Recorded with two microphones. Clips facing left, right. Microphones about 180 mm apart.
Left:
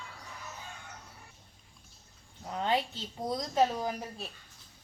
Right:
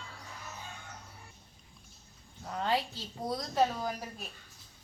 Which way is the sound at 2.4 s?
20° left (ahead or behind).